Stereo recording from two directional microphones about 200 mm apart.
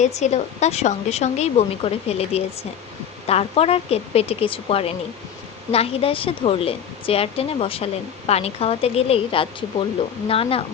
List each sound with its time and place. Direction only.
0.0 s a woman's voice: 35° left (ahead or behind)